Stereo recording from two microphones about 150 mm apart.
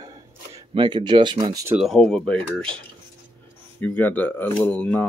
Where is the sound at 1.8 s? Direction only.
Centre (ahead or behind).